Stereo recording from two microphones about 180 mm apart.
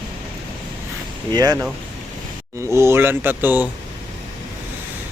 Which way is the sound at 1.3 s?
20° right (ahead or behind).